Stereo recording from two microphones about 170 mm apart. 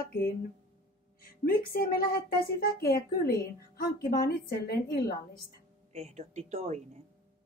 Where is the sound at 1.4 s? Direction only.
60° left (ahead or behind).